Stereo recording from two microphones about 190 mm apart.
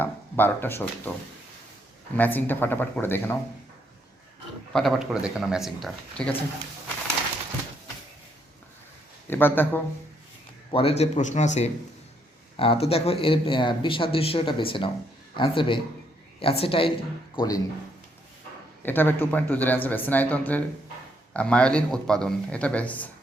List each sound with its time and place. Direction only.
0.0 s speech: 10° left (ahead or behind)
2.1 s speech: 10° left (ahead or behind)
4.7 s a man's voice: centre (ahead or behind)
9.2 s speech: 10° left (ahead or behind)
10.7 s speech: 30° left (ahead or behind)
18.8 s a man's voice: 10° left (ahead or behind)